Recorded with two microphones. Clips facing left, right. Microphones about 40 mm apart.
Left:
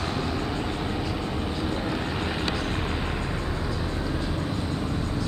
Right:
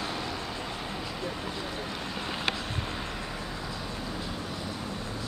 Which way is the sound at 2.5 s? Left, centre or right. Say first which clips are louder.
Left 6 dB; centre.